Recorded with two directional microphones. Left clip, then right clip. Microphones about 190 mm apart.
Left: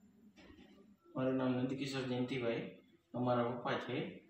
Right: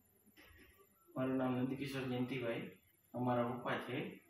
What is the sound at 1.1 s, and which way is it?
Speech, centre (ahead or behind).